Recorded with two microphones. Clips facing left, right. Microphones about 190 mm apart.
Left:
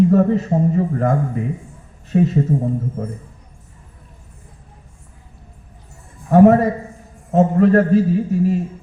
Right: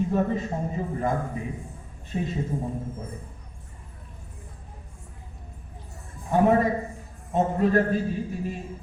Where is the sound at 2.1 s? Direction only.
60° left (ahead or behind).